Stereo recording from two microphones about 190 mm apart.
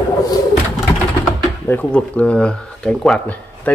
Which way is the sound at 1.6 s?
10° left (ahead or behind).